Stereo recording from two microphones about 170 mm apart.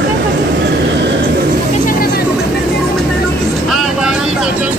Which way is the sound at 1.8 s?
60° left (ahead or behind).